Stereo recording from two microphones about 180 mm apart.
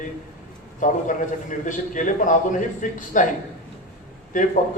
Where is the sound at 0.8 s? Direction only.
45° left (ahead or behind).